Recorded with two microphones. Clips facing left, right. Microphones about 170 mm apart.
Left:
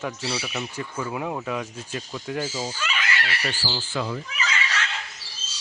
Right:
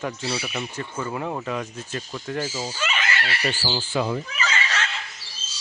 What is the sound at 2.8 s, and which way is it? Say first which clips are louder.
Fowl: right 2 dB; 25° right (ahead or behind).